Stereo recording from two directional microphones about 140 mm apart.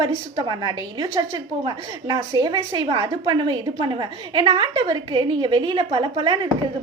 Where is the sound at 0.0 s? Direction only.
30° right (ahead or behind).